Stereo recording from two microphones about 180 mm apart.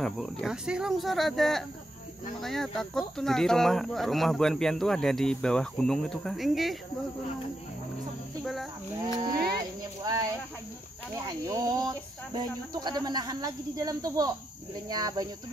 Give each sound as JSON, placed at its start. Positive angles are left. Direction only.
{"t": 0.0, "sound": "speech", "side_deg": 0}
{"t": 9.0, "sound": "speech", "side_deg": -20}
{"t": 11.1, "sound": "speech", "side_deg": -20}